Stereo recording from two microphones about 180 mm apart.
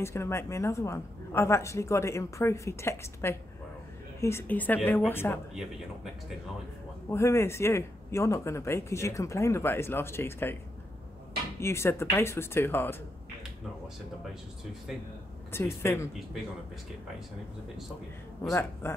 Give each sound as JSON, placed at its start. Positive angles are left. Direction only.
{"t": 0.0, "sound": "speech", "side_deg": 15}
{"t": 7.1, "sound": "speech", "side_deg": 15}
{"t": 11.6, "sound": "speech", "side_deg": 15}
{"t": 15.5, "sound": "speech", "side_deg": 15}
{"t": 18.5, "sound": "speech", "side_deg": 15}